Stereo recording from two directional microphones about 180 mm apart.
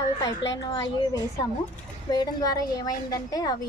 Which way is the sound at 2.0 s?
20° left (ahead or behind).